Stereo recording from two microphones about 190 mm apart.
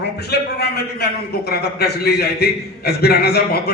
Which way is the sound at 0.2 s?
60° left (ahead or behind).